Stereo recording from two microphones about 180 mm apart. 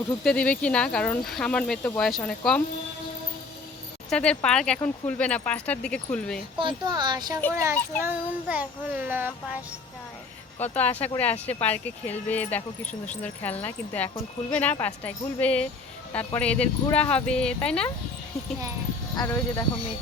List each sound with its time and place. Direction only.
0.3 s speech: 5° left (ahead or behind)
4.1 s speech: 5° left (ahead or behind)
6.6 s speech: 25° right (ahead or behind)
7.5 s child singing: 15° right (ahead or behind)
10.6 s speech: 10° left (ahead or behind)
19.1 s speech: 20° left (ahead or behind)